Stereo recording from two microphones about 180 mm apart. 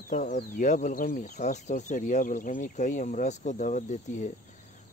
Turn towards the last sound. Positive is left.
turn(degrees=45)  # may be behind; listen again after turning